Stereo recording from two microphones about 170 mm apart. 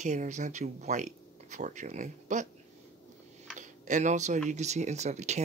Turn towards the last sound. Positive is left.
turn(degrees=-40)  # may be behind; listen again after turning